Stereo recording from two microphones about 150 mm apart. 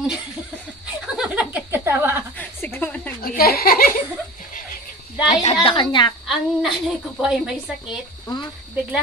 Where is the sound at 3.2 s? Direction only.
85° left.